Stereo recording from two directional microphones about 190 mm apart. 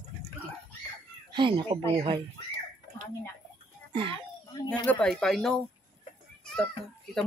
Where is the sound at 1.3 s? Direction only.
25° right (ahead or behind).